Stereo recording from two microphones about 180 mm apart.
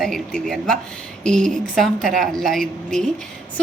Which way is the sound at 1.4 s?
45° right (ahead or behind).